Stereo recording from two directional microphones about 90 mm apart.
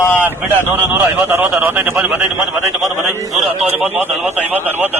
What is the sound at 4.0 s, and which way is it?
Speech, 20° right (ahead or behind).